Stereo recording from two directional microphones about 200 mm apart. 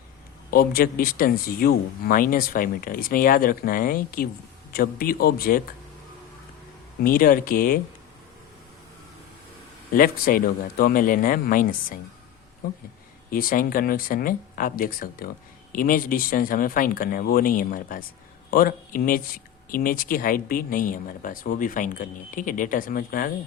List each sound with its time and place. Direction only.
0.5 s speech: 50° left (ahead or behind)
7.0 s speech: 45° left (ahead or behind)
9.9 s speech: 45° left (ahead or behind)